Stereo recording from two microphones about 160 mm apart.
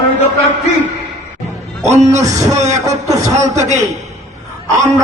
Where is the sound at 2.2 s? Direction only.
45° right (ahead or behind).